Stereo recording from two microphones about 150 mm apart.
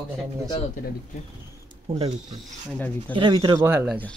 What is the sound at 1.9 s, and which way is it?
Speech, 40° right (ahead or behind).